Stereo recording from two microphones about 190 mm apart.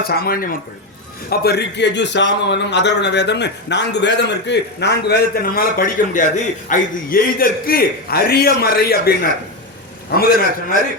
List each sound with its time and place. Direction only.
0.0 s a man's voice: 50° left (ahead or behind)